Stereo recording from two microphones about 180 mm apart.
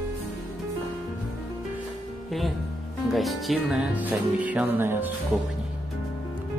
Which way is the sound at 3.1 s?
Centre (ahead or behind).